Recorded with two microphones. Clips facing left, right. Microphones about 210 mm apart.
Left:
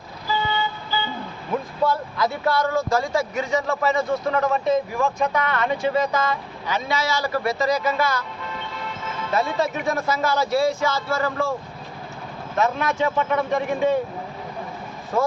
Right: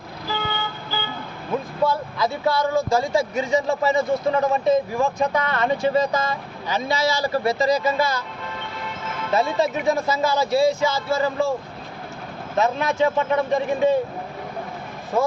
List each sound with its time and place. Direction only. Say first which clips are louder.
0.3 s vehicle: left 3 dB; 65° right (ahead or behind)
1.9 s speech: even; 10° right (ahead or behind)
3.1 s speech: right 2 dB; 30° right (ahead or behind)
9.3 s a man's voice: right 2 dB; 25° right (ahead or behind)
12.5 s a man's voice: right 2 dB; 30° right (ahead or behind)